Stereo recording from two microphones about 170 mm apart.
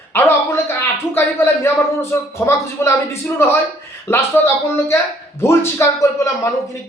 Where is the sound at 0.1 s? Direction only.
15° left (ahead or behind).